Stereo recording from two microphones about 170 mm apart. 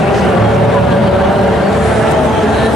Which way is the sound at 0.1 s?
Centre (ahead or behind).